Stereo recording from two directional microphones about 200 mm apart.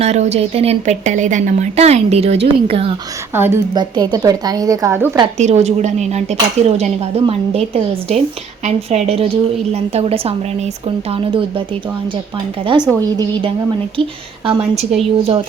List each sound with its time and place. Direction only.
0.0 s a woman's voice: 35° right (ahead or behind)
3.3 s a woman's voice: 10° right (ahead or behind)
5.4 s a woman's voice: 35° right (ahead or behind)
12.6 s a woman's voice: 20° right (ahead or behind)
14.4 s a woman's voice: 30° right (ahead or behind)